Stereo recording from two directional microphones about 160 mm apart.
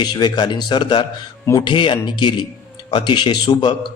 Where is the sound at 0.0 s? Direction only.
25° left (ahead or behind).